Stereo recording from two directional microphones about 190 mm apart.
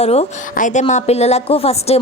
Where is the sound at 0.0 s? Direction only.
35° left (ahead or behind).